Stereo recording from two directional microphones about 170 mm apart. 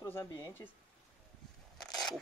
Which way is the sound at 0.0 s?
15° left (ahead or behind).